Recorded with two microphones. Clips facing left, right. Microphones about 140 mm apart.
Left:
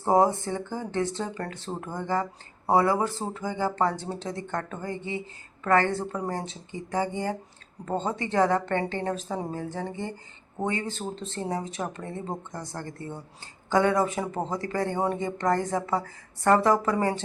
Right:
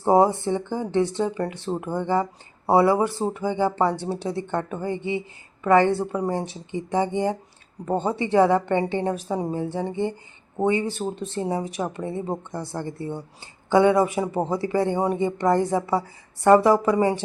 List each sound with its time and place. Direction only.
0.0 s speech: 20° right (ahead or behind)